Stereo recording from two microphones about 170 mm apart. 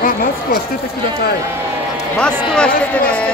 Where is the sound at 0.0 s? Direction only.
60° left (ahead or behind).